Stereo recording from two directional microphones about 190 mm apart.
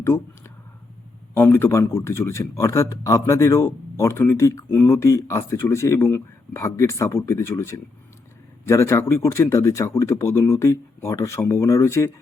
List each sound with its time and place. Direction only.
0.0 s speech: 15° left (ahead or behind)